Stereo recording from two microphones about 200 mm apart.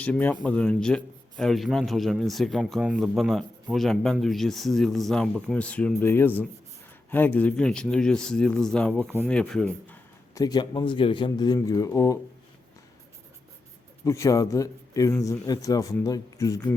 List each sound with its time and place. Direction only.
0.0 s a man's voice: 10° left (ahead or behind)
14.0 s a man's voice: 15° left (ahead or behind)